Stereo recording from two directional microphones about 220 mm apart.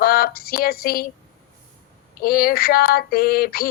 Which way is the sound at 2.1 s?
40° left (ahead or behind).